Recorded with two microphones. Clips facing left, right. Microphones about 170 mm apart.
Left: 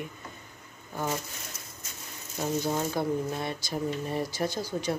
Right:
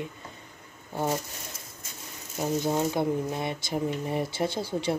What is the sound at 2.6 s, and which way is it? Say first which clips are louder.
Speech: right 5 dB; 20° right (ahead or behind).